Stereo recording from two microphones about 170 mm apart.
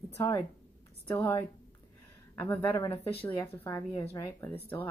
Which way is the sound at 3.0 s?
35° left (ahead or behind).